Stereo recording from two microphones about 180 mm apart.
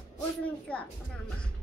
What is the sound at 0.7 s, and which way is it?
Speech, 5° left (ahead or behind).